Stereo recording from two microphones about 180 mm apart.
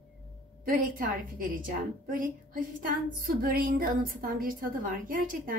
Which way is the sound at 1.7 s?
50° right (ahead or behind).